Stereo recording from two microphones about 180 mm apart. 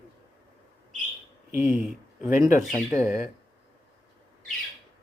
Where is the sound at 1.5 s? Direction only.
10° right (ahead or behind).